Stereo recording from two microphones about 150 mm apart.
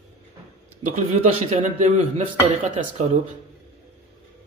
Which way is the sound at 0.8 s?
55° right (ahead or behind).